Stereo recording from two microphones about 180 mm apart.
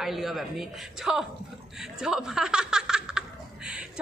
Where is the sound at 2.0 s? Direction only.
5° right (ahead or behind).